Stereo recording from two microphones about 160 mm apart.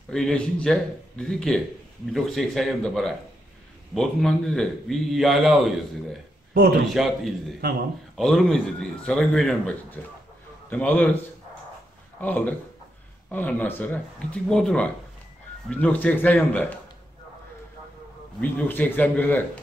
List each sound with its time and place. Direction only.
0.1 s a man's voice: 5° left (ahead or behind)
6.5 s a man's voice: 75° right (ahead or behind)
6.9 s a man's voice: centre (ahead or behind)
12.2 s speech: 10° left (ahead or behind)
18.4 s speech: 10° left (ahead or behind)